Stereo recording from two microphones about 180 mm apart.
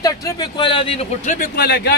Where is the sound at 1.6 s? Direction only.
65° left (ahead or behind).